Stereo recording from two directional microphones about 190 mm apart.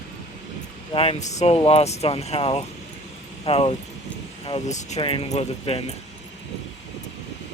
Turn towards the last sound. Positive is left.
turn(degrees=35)  # may be behind; listen again after turning